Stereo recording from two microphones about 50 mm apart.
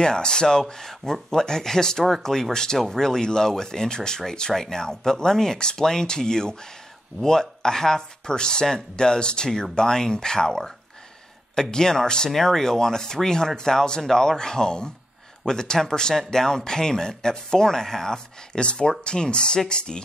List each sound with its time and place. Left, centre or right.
0.0 s speech: centre